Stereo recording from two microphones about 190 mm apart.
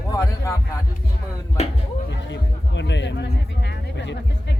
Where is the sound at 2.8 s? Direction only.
70° left (ahead or behind).